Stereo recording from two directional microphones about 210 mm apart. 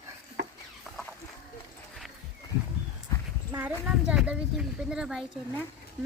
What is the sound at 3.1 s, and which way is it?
Horse, 15° left (ahead or behind).